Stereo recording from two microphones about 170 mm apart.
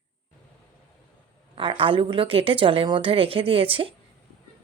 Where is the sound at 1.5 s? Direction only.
30° right (ahead or behind).